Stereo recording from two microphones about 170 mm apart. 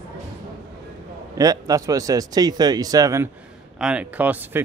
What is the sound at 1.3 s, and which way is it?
Speech, 20° right (ahead or behind).